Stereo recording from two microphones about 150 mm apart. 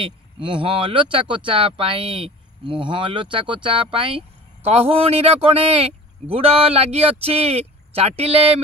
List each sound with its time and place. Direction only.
0.0 s speech: 35° right (ahead or behind)